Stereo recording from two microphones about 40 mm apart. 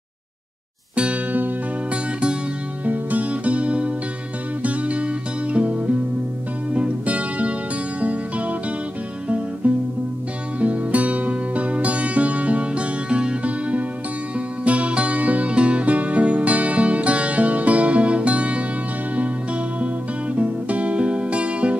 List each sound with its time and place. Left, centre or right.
0.9 s music: right
2.8 s music: right
20.3 s music: right